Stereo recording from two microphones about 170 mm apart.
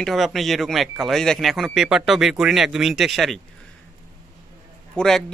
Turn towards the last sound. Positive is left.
turn(degrees=5)  # may be behind; listen again after turning